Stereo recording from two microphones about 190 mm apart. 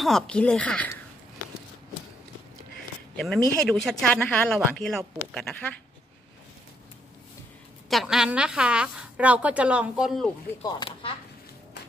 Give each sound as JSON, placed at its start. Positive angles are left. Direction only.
{"t": 0.0, "sound": "speech", "side_deg": 5}
{"t": 3.2, "sound": "speech", "side_deg": 0}
{"t": 7.9, "sound": "speech", "side_deg": 0}
{"t": 10.6, "sound": "speech", "side_deg": 20}